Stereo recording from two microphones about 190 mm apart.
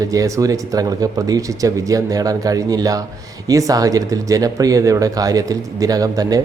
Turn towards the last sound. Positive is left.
turn(degrees=-20)  # may be behind; listen again after turning